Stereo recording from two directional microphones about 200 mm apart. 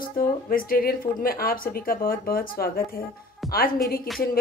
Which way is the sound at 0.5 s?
45° left (ahead or behind).